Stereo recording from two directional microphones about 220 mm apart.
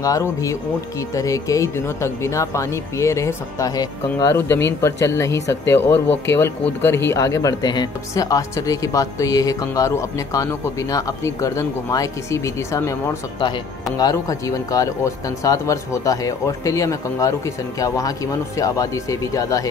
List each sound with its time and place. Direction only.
0.0 s speech: 15° left (ahead or behind)
14.7 s speech: 15° left (ahead or behind)